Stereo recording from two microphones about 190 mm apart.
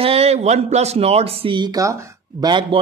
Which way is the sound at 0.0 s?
30° right (ahead or behind).